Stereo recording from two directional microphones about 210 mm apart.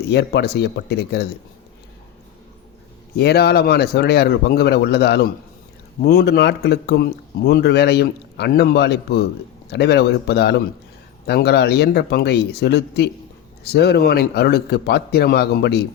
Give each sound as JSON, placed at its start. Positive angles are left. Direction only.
{"t": 0.1, "sound": "a man's voice", "side_deg": 50}
{"t": 3.2, "sound": "a man's voice", "side_deg": 50}